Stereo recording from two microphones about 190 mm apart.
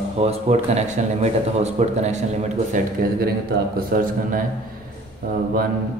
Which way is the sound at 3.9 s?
45° right (ahead or behind).